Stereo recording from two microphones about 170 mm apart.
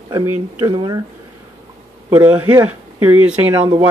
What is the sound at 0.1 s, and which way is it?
Speech, 20° right (ahead or behind).